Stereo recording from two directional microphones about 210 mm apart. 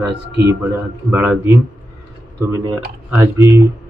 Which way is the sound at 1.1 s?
10° right (ahead or behind).